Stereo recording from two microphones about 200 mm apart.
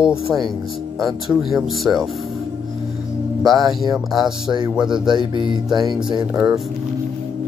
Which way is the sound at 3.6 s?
20° right (ahead or behind).